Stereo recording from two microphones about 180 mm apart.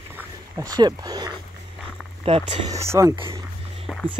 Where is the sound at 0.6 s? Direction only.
20° right (ahead or behind).